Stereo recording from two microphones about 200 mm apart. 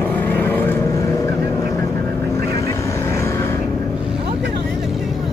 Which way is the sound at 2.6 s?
15° left (ahead or behind).